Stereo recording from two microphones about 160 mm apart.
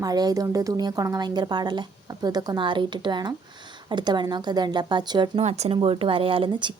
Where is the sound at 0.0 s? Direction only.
25° right (ahead or behind).